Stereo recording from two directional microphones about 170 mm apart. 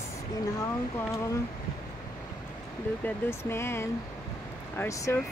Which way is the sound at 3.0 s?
15° left (ahead or behind).